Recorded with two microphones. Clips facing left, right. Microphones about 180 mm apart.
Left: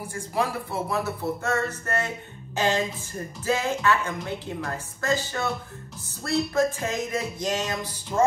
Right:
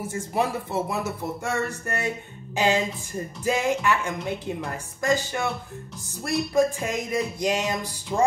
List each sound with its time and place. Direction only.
0.1 s a man's voice: 20° right (ahead or behind)